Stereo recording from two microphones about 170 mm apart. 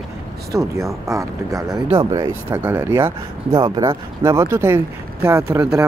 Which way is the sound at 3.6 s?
25° right (ahead or behind).